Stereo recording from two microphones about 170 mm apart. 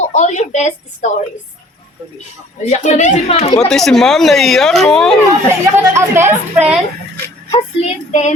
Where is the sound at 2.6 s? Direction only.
40° left (ahead or behind).